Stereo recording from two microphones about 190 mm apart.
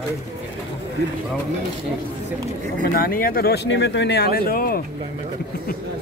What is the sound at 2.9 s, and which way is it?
Speech, 50° left (ahead or behind).